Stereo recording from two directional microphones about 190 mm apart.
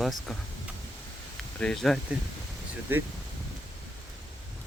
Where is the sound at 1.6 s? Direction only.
5° left (ahead or behind).